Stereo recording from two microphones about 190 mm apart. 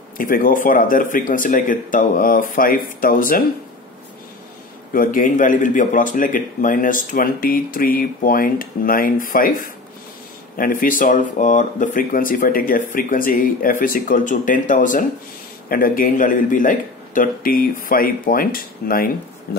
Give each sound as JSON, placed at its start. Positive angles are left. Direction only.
{"t": 0.2, "sound": "speech", "side_deg": 45}
{"t": 4.9, "sound": "speech", "side_deg": 45}